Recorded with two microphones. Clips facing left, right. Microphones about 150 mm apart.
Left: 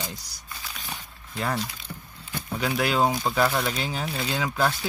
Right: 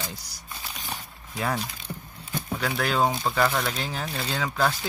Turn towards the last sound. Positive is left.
turn(degrees=5)  # may be behind; listen again after turning